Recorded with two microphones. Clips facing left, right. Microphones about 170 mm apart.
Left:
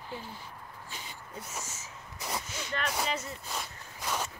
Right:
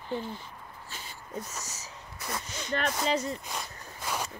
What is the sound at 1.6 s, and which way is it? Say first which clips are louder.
Speech: even; 40° right (ahead or behind).